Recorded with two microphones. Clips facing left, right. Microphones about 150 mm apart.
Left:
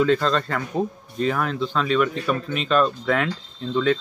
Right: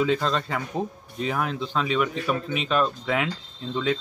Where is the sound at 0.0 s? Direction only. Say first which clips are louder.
Left 4 dB; 15° right (ahead or behind).